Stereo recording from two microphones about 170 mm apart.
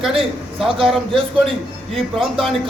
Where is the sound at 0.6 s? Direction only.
30° right (ahead or behind).